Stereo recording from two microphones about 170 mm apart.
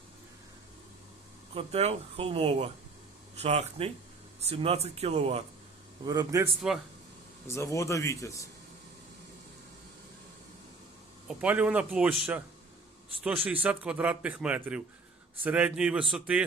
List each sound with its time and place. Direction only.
1.5 s speech: 35° right (ahead or behind)
6.1 s a man's voice: 20° right (ahead or behind)
7.4 s speech: 15° left (ahead or behind)
11.3 s a man's voice: 10° right (ahead or behind)